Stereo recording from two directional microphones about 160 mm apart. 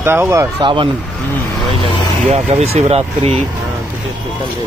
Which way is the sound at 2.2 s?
40° right (ahead or behind).